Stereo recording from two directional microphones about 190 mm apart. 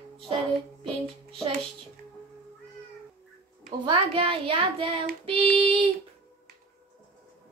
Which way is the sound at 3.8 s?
25° right (ahead or behind).